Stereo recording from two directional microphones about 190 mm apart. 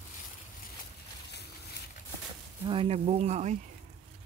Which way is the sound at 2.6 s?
30° right (ahead or behind).